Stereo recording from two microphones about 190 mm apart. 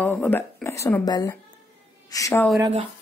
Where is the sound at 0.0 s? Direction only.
10° left (ahead or behind).